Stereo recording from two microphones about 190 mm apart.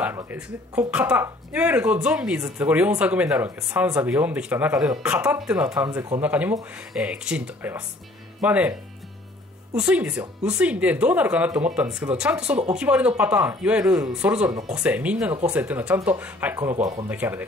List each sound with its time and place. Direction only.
0.0 s speech: 10° right (ahead or behind)
5.7 s speech: 20° right (ahead or behind)
6.2 s speech: 5° right (ahead or behind)
9.8 s speech: 5° right (ahead or behind)